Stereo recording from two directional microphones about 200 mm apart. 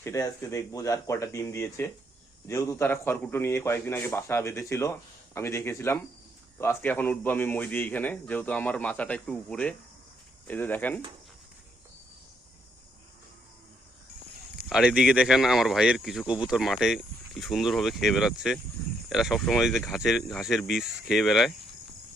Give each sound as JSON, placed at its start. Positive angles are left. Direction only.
{"t": 0.0, "sound": "a man's voice", "side_deg": 15}
{"t": 14.7, "sound": "speech", "side_deg": -5}